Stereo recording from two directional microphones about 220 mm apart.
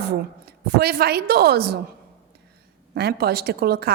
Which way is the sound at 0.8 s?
45° right (ahead or behind).